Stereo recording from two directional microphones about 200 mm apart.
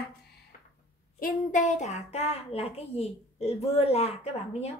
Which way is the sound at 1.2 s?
40° left (ahead or behind).